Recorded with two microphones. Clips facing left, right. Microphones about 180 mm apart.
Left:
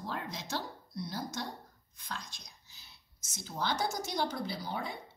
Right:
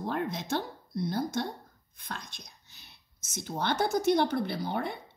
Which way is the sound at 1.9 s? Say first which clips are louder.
Right 2 dB; 55° right (ahead or behind).